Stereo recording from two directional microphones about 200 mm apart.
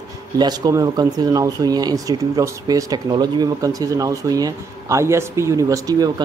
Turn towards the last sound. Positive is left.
turn(degrees=-20)  # may be behind; listen again after turning